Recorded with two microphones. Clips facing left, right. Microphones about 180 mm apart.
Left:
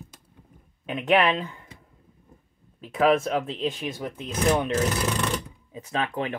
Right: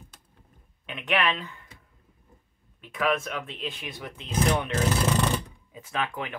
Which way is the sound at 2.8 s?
40° left (ahead or behind).